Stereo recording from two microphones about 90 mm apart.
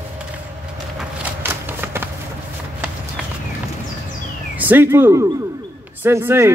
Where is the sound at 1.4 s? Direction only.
25° right (ahead or behind).